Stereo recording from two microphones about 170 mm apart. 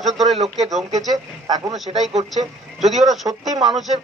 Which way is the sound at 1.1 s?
20° right (ahead or behind).